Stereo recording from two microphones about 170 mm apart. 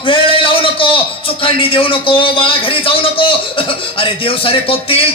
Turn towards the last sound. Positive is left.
turn(degrees=35)  # may be behind; listen again after turning